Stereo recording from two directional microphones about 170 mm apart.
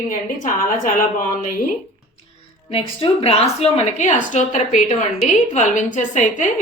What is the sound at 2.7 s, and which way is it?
A woman's voice, 35° left (ahead or behind).